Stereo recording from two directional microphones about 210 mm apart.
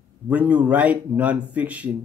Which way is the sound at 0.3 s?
5° right (ahead or behind).